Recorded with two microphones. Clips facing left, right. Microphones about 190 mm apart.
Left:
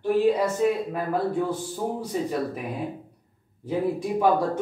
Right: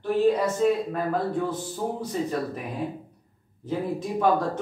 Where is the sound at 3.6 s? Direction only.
10° left (ahead or behind).